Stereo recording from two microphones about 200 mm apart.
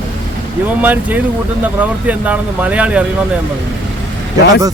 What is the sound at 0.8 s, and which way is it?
Speech, 10° right (ahead or behind).